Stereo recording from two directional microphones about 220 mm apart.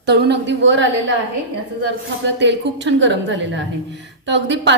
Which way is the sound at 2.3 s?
50° right (ahead or behind).